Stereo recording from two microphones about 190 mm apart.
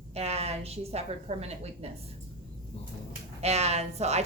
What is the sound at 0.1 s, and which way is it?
A woman's voice, 35° right (ahead or behind).